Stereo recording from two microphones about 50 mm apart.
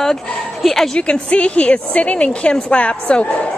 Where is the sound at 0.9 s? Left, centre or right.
Left.